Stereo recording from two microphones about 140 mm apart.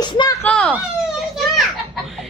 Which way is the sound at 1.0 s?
Centre (ahead or behind).